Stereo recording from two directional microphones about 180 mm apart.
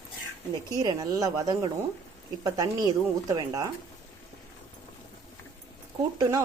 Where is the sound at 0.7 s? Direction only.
20° right (ahead or behind).